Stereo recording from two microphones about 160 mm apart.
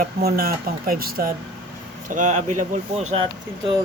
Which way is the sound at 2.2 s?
50° right (ahead or behind).